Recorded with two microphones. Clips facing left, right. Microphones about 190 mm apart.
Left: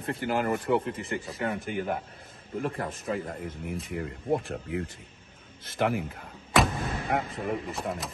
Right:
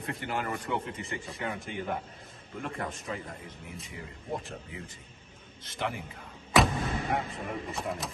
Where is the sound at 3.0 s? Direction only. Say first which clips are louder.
Left 7 dB; 55° left (ahead or behind).